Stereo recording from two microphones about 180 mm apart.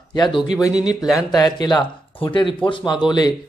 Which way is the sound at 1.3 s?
20° left (ahead or behind).